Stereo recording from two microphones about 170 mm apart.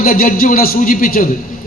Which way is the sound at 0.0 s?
55° left (ahead or behind).